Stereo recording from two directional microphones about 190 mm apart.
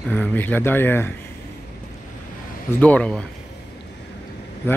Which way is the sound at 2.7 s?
10° left (ahead or behind).